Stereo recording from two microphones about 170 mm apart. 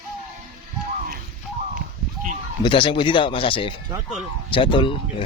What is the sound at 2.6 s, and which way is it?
Speech, 30° left (ahead or behind).